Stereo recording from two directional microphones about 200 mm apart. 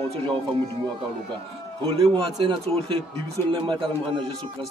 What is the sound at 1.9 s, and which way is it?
A man's voice, 25° right (ahead or behind).